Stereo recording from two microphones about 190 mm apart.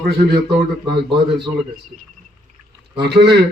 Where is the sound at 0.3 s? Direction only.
60° right (ahead or behind).